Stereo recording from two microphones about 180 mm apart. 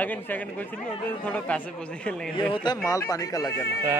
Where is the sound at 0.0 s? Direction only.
10° left (ahead or behind).